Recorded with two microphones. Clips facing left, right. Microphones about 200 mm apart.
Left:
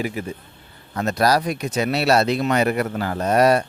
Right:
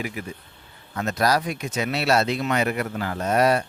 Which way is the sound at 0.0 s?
30° left (ahead or behind).